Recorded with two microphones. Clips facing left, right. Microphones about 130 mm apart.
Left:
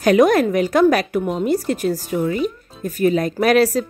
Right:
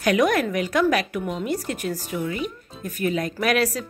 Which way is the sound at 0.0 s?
35° left (ahead or behind).